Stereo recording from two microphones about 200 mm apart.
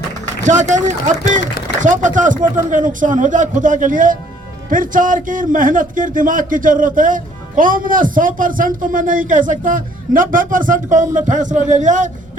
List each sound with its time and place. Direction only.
0.4 s a man's voice: 35° right (ahead or behind)